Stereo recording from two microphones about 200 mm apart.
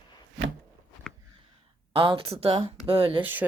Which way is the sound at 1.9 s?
25° right (ahead or behind).